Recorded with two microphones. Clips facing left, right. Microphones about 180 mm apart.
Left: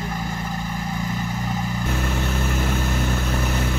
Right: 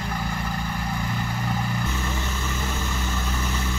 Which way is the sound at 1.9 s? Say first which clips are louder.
Left 5 dB; 65° left (ahead or behind).